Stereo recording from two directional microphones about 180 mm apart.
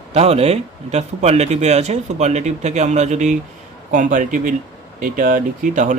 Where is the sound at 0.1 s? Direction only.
35° right (ahead or behind).